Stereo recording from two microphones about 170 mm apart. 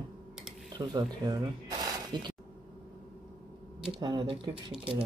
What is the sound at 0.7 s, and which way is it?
Speech, 25° right (ahead or behind).